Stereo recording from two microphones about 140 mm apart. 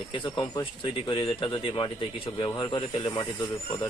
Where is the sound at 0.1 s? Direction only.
35° left (ahead or behind).